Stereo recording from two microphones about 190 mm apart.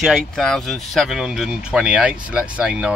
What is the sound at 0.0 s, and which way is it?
Speech, centre (ahead or behind).